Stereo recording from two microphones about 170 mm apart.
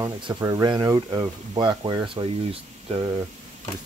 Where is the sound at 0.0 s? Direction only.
25° right (ahead or behind).